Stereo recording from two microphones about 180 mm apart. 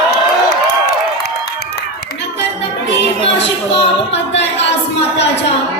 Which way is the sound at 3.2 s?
30° left (ahead or behind).